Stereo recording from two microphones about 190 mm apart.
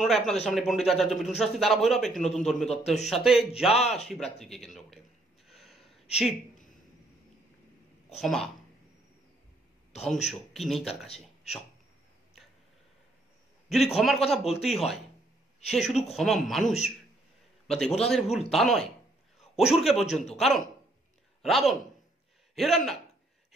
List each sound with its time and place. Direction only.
0.0 s a man's voice: centre (ahead or behind)
5.5 s gasp: centre (ahead or behind)
8.2 s a man's voice: centre (ahead or behind)
10.0 s a man's voice: centre (ahead or behind)
13.9 s a man's voice: centre (ahead or behind)
19.9 s speech: 35° left (ahead or behind)
20.3 s a man's voice: centre (ahead or behind)